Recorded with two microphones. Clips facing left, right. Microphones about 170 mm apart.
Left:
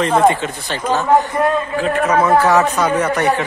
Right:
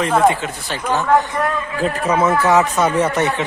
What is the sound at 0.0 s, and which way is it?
Speech, centre (ahead or behind).